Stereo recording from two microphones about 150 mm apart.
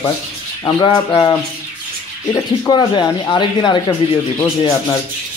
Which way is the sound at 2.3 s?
30° left (ahead or behind).